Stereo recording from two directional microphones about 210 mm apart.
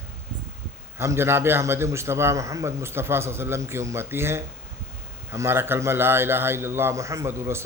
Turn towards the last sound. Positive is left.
turn(degrees=-10)  # may be behind; listen again after turning